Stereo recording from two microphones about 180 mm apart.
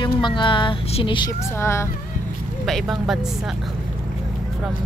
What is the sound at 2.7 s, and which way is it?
Speech, centre (ahead or behind).